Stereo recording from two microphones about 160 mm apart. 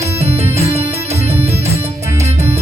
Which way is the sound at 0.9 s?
40° right (ahead or behind).